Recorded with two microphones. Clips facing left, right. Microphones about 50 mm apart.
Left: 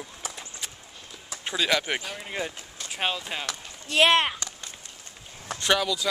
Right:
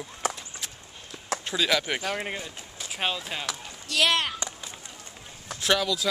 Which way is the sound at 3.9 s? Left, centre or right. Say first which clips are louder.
Left 4 dB; left.